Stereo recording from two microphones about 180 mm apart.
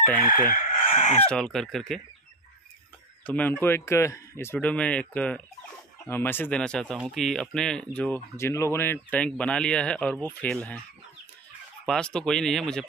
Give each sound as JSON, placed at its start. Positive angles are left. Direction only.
{"t": 0.5, "sound": "speech", "side_deg": 45}
{"t": 1.2, "sound": "speech", "side_deg": 5}
{"t": 3.3, "sound": "speech", "side_deg": 10}
{"t": 11.8, "sound": "speech", "side_deg": 5}